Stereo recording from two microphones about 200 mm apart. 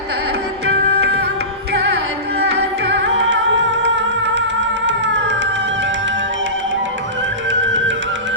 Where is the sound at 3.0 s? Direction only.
65° right (ahead or behind).